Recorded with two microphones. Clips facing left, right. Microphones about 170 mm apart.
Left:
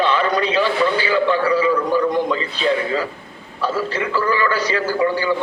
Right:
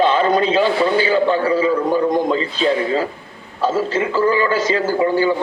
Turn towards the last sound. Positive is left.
turn(degrees=-25)  # may be behind; listen again after turning